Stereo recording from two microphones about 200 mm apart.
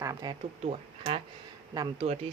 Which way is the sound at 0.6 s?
35° right (ahead or behind).